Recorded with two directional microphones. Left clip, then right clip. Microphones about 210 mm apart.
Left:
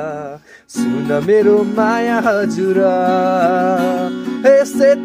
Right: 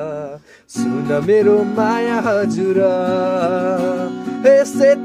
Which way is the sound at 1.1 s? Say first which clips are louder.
Left 1 dB; 5° left (ahead or behind).